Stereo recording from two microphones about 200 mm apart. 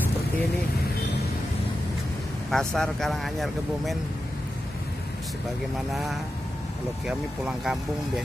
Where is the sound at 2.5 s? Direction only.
5° left (ahead or behind).